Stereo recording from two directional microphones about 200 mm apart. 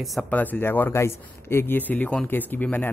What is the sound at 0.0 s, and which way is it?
Speech, centre (ahead or behind).